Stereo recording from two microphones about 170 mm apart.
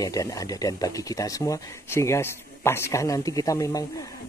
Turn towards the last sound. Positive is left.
turn(degrees=20)  # may be behind; listen again after turning